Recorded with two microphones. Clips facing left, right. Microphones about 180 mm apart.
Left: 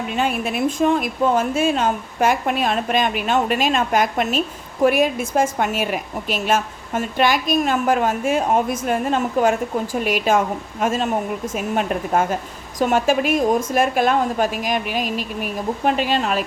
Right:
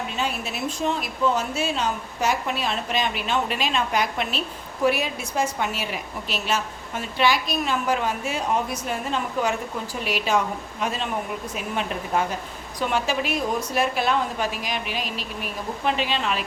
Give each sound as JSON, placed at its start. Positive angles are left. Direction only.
{"t": 0.1, "sound": "a woman's voice", "side_deg": 55}